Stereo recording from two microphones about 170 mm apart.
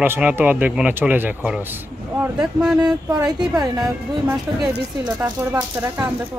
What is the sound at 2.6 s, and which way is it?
Speech, 5° right (ahead or behind).